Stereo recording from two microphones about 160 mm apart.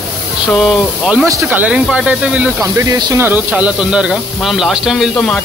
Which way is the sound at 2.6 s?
20° right (ahead or behind).